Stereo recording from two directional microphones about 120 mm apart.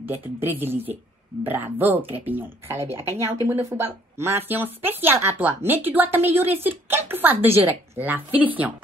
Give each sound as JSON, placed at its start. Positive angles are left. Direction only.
{"t": 0.0, "sound": "a woman's voice", "side_deg": -15}